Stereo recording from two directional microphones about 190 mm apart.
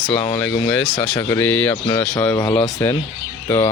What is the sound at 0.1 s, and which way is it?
Speech, 25° left (ahead or behind).